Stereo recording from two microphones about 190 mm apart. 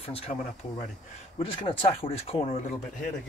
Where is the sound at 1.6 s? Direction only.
30° left (ahead or behind).